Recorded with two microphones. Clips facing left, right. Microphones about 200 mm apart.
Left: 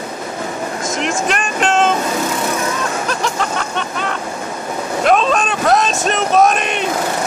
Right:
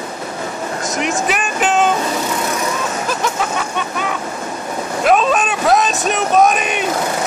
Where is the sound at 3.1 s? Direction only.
5° right (ahead or behind).